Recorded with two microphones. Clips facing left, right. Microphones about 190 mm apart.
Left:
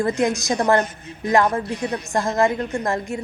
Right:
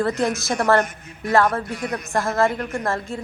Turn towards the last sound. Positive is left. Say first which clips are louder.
# left 2 dB
turn(degrees=15)  # may be behind; listen again after turning